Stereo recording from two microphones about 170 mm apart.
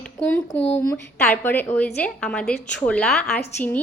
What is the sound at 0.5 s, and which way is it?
Speech, 35° left (ahead or behind).